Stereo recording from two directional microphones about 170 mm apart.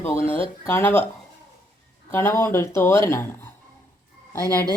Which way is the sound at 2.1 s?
15° left (ahead or behind).